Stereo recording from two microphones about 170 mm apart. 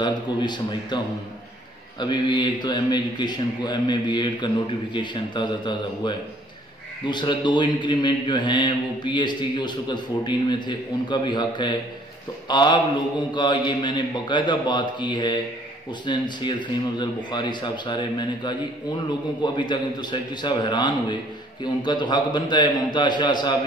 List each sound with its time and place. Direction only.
0.0 s a man's voice: 25° left (ahead or behind)